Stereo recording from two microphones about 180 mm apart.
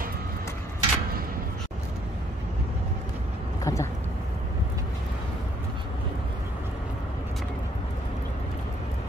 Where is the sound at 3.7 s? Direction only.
20° left (ahead or behind).